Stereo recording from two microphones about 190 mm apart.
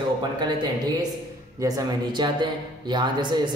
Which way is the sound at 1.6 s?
20° right (ahead or behind).